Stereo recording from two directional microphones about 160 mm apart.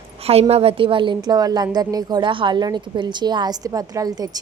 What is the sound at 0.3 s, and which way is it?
A woman's voice, 40° right (ahead or behind).